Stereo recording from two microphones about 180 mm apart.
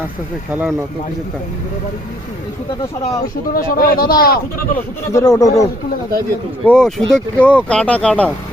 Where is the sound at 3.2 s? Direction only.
55° left (ahead or behind).